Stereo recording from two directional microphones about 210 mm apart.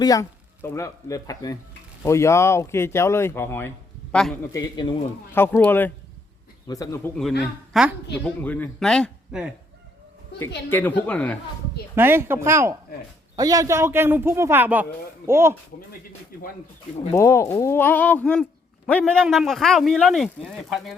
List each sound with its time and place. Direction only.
0.0 s speech: 15° left (ahead or behind)
4.5 s speech: 20° left (ahead or behind)
7.2 s speech: centre (ahead or behind)
10.7 s speech: 10° left (ahead or behind)
11.9 s a man's voice: 10° right (ahead or behind)
17.1 s speech: 15° left (ahead or behind)